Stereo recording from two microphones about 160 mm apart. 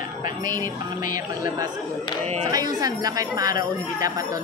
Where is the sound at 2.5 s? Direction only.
25° right (ahead or behind).